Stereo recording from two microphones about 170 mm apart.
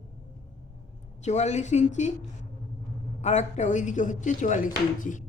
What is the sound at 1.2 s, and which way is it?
Speech, 40° left (ahead or behind).